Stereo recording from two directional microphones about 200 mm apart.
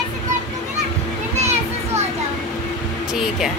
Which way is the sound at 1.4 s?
35° right (ahead or behind).